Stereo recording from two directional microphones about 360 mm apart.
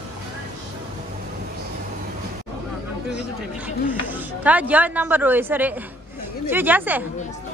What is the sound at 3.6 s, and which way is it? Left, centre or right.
A woman's voice, centre.